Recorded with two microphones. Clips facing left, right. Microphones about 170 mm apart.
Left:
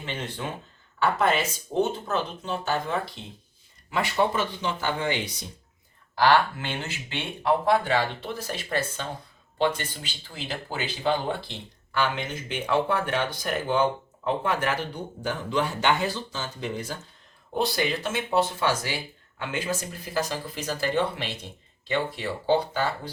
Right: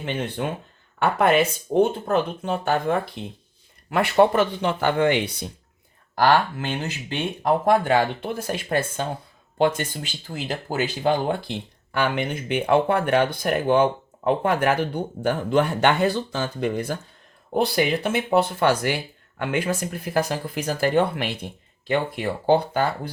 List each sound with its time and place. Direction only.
0.0 s speech: 55° right (ahead or behind)
6.1 s speech: 45° right (ahead or behind)
11.9 s speech: 60° right (ahead or behind)